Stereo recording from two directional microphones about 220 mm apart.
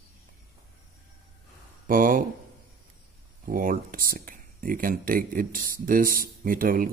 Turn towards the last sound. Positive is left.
turn(degrees=-40)  # may be behind; listen again after turning